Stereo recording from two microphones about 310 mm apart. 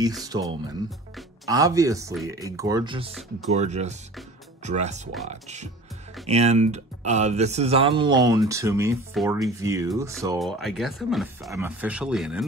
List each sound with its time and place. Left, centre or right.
0.2 s speech: centre
10.4 s speech: centre